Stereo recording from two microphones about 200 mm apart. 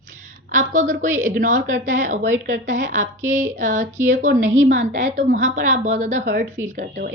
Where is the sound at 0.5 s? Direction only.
40° right (ahead or behind).